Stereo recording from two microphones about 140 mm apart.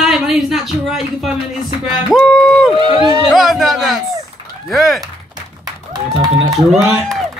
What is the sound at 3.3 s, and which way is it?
A woman's voice, centre (ahead or behind).